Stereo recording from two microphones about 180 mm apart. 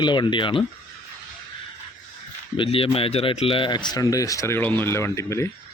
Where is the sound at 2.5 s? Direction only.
30° left (ahead or behind).